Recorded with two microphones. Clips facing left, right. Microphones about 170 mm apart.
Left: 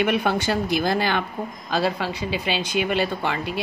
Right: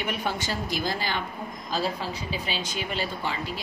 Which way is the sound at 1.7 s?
70° left (ahead or behind).